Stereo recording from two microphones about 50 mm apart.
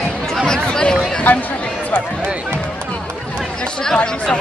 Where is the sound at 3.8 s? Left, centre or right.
Centre.